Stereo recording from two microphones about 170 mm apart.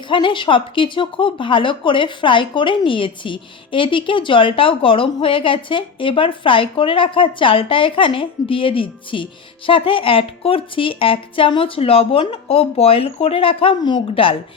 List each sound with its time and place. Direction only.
0.1 s speech: 30° left (ahead or behind)